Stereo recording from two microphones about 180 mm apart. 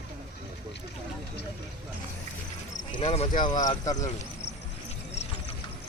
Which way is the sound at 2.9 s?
35° left (ahead or behind).